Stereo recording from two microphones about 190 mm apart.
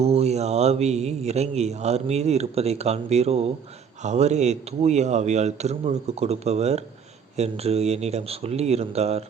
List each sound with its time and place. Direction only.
0.0 s a man's voice: 35° right (ahead or behind)